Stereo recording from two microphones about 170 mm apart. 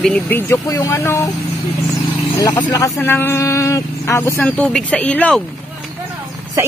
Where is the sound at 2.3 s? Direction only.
25° left (ahead or behind); by 5.4 s 5° left (ahead or behind).